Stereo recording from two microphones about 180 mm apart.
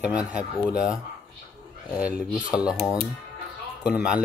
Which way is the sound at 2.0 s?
5° right (ahead or behind).